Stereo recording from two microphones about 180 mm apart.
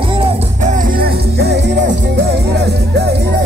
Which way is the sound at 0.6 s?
45° right (ahead or behind).